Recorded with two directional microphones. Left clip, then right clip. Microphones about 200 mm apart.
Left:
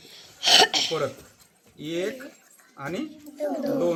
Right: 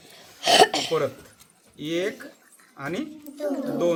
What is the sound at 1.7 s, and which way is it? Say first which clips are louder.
Speech: right 2 dB; 10° right (ahead or behind).